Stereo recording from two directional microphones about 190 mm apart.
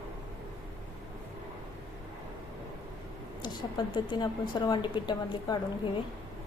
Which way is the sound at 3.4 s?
20° left (ahead or behind).